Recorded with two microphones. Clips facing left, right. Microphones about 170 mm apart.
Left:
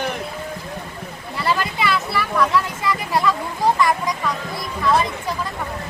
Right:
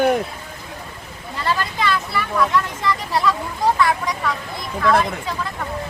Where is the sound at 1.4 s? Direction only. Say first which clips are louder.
Even; 10° left (ahead or behind).